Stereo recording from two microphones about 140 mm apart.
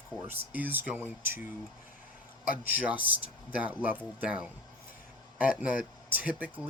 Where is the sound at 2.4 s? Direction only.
10° right (ahead or behind).